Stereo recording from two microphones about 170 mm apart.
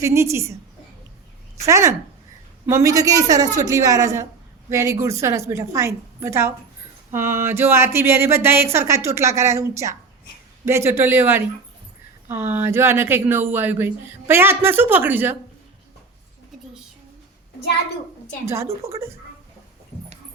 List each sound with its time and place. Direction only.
0.0 s speech: 15° right (ahead or behind)
1.6 s a woman's voice: 20° right (ahead or behind)
18.4 s speech: 15° right (ahead or behind)